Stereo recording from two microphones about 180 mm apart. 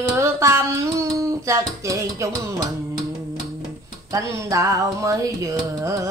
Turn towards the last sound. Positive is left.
turn(degrees=-15)  # may be behind; listen again after turning